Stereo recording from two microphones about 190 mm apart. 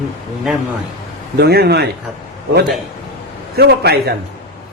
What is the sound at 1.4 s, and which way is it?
Speech, 60° right (ahead or behind).